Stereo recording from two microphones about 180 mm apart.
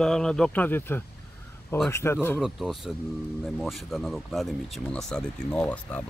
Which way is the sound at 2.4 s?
Centre (ahead or behind).